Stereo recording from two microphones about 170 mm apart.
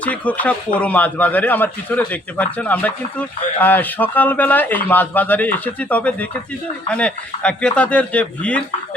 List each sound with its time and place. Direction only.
0.0 s speech: 10° left (ahead or behind)